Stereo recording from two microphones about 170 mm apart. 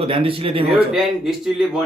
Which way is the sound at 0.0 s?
35° right (ahead or behind).